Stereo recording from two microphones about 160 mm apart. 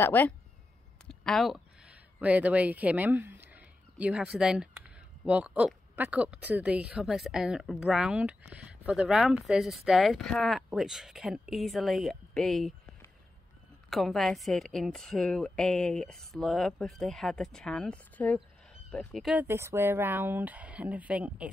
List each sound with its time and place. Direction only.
0.0 s a woman's voice: 10° left (ahead or behind)
19.3 s speech: 15° right (ahead or behind)